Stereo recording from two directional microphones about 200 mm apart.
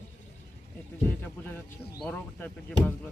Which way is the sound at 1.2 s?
10° left (ahead or behind).